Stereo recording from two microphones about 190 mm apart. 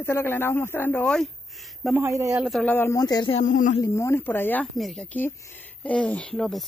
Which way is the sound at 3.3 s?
45° left (ahead or behind).